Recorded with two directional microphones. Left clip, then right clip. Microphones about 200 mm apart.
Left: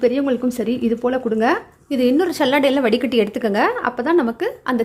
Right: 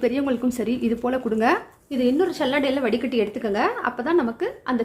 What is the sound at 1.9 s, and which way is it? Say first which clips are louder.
A woman's voice: left 4 dB; 35° left (ahead or behind).